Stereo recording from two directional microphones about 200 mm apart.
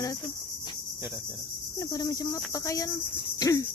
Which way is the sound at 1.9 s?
15° left (ahead or behind).